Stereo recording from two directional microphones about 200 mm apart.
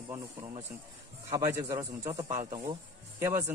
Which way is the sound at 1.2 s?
15° right (ahead or behind).